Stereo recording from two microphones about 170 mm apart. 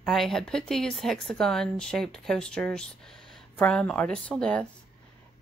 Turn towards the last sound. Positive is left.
turn(degrees=5)  # may be behind; listen again after turning